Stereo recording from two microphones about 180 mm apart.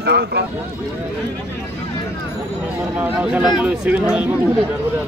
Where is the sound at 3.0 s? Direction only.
5° right (ahead or behind).